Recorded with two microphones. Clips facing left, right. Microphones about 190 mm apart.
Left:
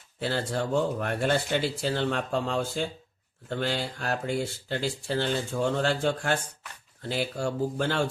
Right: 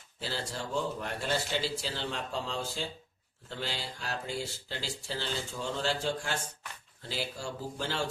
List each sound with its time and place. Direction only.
0.2 s speech: 55° left (ahead or behind)